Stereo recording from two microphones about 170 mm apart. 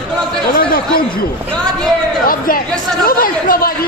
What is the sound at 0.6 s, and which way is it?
Speech, 60° left (ahead or behind).